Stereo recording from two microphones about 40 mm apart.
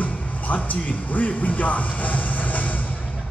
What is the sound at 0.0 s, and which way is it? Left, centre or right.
Speech, left.